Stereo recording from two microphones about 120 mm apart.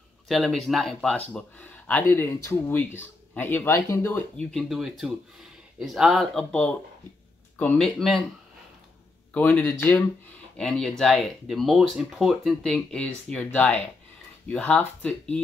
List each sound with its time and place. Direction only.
0.3 s speech: centre (ahead or behind)
7.7 s speech: centre (ahead or behind)
9.3 s speech: 15° left (ahead or behind)
10.6 s speech: 5° left (ahead or behind)